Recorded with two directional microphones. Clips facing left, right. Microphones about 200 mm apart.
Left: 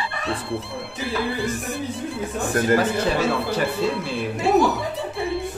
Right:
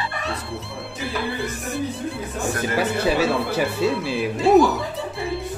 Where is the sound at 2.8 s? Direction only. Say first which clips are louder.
Right 1 dB; centre (ahead or behind).